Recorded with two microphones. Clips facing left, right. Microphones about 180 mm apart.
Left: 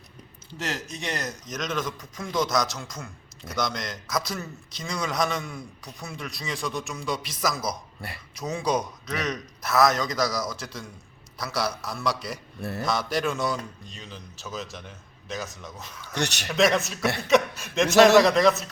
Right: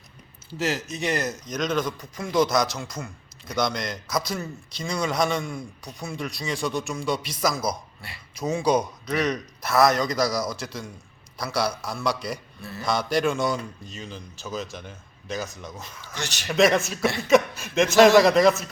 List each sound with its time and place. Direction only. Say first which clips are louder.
0.5 s a man's voice: right 5 dB; 5° right (ahead or behind)
16.1 s speech: left 5 dB; 65° left (ahead or behind)
16.5 s a man's voice: right 3 dB; centre (ahead or behind)